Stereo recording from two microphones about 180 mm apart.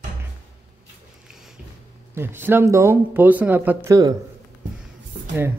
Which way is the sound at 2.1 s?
10° right (ahead or behind).